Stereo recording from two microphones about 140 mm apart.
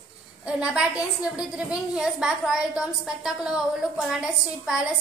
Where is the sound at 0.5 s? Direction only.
5° right (ahead or behind).